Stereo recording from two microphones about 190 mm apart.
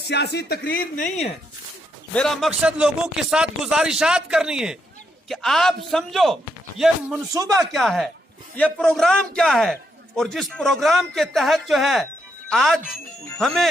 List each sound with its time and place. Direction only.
0.1 s speech: 60° left (ahead or behind); by 1.3 s 40° left (ahead or behind)
2.1 s speech: centre (ahead or behind)